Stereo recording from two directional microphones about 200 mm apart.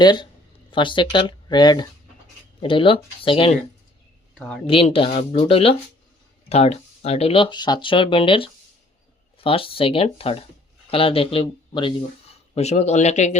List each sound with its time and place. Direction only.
0.0 s speech: 20° left (ahead or behind)
4.6 s speech: 30° left (ahead or behind)